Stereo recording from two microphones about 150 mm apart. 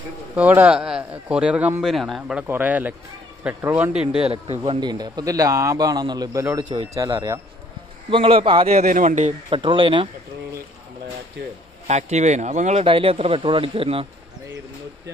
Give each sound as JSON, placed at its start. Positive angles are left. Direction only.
{"t": 0.4, "sound": "speech", "side_deg": -10}
{"t": 4.2, "sound": "a man's voice", "side_deg": -40}
{"t": 8.1, "sound": "speech", "side_deg": -35}
{"t": 8.8, "sound": "speech", "side_deg": -60}
{"t": 9.5, "sound": "speech", "side_deg": -35}
{"t": 11.9, "sound": "speech", "side_deg": -50}
{"t": 12.8, "sound": "speech", "side_deg": -35}